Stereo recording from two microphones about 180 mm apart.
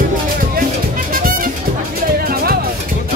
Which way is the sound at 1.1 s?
50° right (ahead or behind).